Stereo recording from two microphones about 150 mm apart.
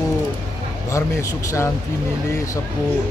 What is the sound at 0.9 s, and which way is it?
Speech, 20° left (ahead or behind).